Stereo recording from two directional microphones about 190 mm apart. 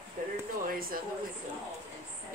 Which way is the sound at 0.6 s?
50° right (ahead or behind).